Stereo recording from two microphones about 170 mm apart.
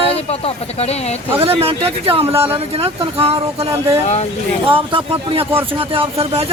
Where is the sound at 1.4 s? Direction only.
35° right (ahead or behind).